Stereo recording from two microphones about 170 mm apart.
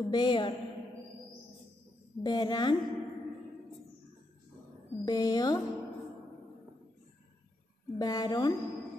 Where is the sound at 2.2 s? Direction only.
25° left (ahead or behind).